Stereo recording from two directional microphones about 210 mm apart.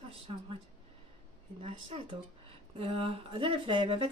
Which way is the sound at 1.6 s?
25° right (ahead or behind).